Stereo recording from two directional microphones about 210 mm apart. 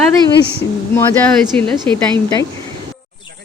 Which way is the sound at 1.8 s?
25° right (ahead or behind).